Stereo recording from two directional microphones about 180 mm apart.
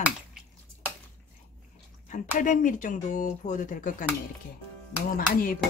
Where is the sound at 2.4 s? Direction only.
45° left (ahead or behind).